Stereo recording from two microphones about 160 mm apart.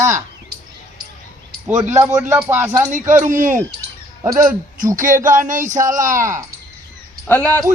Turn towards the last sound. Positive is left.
turn(degrees=10)  # may be behind; listen again after turning